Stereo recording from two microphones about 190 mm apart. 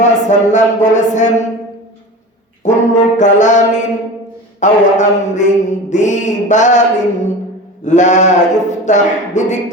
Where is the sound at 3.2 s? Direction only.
40° left (ahead or behind).